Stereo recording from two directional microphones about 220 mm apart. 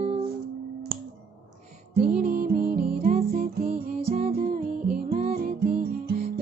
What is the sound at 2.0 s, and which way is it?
Music, 40° right (ahead or behind).